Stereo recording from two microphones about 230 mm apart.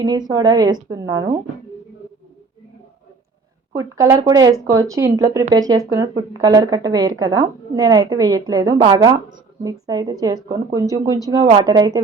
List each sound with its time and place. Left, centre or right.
0.0 s a woman's voice: centre
3.7 s a woman's voice: centre